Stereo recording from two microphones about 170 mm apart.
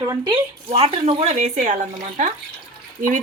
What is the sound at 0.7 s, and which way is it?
Speech, 35° right (ahead or behind).